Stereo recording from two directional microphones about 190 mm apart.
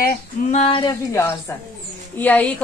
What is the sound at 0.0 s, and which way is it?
Female singing, 35° left (ahead or behind).